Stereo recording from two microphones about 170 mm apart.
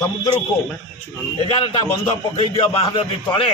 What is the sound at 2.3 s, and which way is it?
A man's voice, 30° left (ahead or behind).